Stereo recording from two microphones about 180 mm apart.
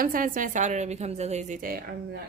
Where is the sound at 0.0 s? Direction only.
50° right (ahead or behind).